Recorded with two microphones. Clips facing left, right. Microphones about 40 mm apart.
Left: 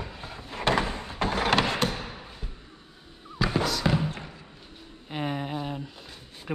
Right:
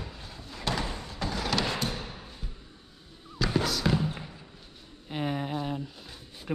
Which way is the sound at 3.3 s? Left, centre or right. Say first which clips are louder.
Left 2 dB; centre.